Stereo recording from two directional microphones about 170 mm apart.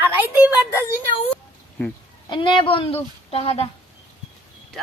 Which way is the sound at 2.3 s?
30° left (ahead or behind).